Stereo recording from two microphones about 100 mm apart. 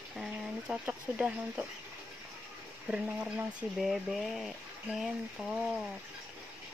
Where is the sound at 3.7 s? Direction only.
Centre (ahead or behind).